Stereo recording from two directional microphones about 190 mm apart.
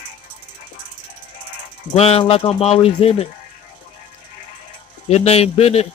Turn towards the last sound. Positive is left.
turn(degrees=35)  # may be behind; listen again after turning